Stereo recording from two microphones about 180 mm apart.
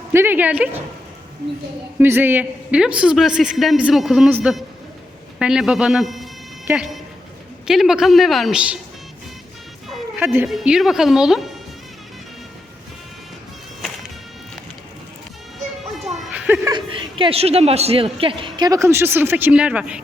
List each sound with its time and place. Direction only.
0.1 s speech: 10° right (ahead or behind)
2.0 s a man's voice: 10° right (ahead or behind)
5.4 s a man's voice: 5° right (ahead or behind)
6.7 s a man's voice: 10° right (ahead or behind)
10.2 s a man's voice: 10° right (ahead or behind)
15.5 s children playing: centre (ahead or behind)
16.7 s a man's voice: 30° right (ahead or behind); by 20.0 s 5° right (ahead or behind)